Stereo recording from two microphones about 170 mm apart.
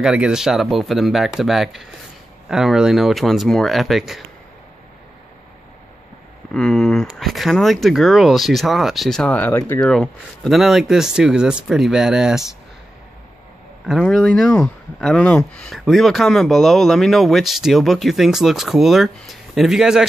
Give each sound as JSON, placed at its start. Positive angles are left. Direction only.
{"t": 0.0, "sound": "speech", "side_deg": -5}
{"t": 6.5, "sound": "speech", "side_deg": 5}
{"t": 14.0, "sound": "speech", "side_deg": 5}